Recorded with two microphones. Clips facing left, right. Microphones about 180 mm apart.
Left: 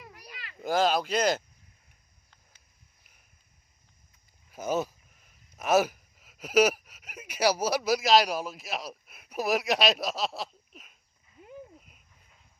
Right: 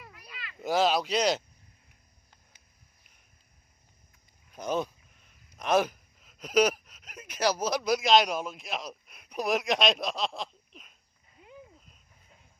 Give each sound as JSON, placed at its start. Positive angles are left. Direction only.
{"t": 0.2, "sound": "a sound", "side_deg": 40}
{"t": 0.6, "sound": "speech", "side_deg": 0}
{"t": 4.5, "sound": "speech", "side_deg": 5}